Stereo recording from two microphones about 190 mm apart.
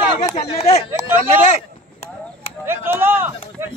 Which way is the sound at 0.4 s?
35° left (ahead or behind).